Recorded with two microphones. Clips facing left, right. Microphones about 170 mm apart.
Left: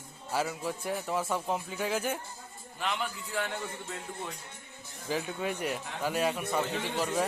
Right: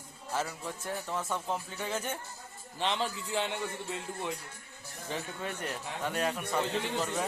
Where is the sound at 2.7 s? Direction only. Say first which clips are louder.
Right 2 dB; 30° right (ahead or behind).